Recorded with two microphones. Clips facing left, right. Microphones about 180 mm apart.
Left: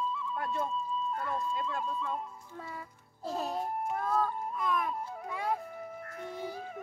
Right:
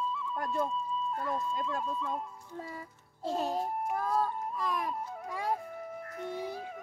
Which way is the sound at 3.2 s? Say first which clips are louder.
Right 2 dB; 25° right (ahead or behind).